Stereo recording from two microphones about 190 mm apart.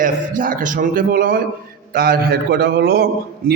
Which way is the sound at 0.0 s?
45° right (ahead or behind).